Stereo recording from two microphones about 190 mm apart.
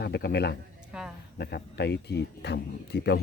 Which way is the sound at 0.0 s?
60° left (ahead or behind).